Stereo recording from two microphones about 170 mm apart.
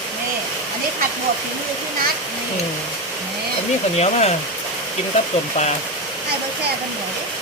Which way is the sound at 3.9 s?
35° left (ahead or behind).